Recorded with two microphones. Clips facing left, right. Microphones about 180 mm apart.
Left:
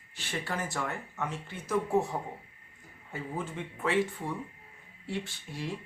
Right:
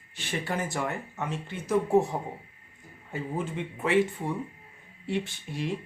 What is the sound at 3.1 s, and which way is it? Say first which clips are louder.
Speech: right 4 dB; 20° right (ahead or behind).